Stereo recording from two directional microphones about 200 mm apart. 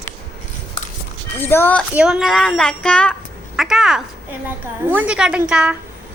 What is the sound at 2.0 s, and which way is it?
A child's voice, 5° right (ahead or behind).